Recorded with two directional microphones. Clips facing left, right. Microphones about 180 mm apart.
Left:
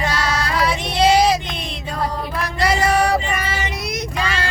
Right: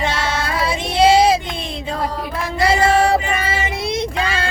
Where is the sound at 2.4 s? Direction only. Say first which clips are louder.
Right 3 dB; 25° right (ahead or behind).